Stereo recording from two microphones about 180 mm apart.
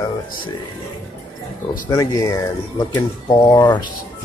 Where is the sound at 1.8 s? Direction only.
15° left (ahead or behind).